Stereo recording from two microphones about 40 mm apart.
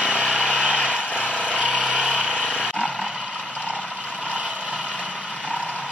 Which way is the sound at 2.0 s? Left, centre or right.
Centre.